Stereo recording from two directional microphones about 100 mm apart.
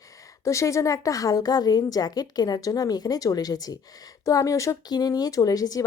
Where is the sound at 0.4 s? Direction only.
30° left (ahead or behind).